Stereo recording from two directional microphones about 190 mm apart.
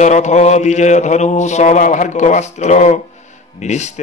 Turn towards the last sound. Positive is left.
turn(degrees=35)  # may be behind; listen again after turning